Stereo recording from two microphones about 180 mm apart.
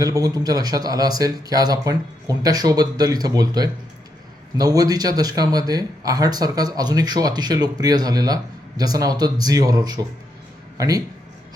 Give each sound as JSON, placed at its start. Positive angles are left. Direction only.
{"t": 0.0, "sound": "speech", "side_deg": -20}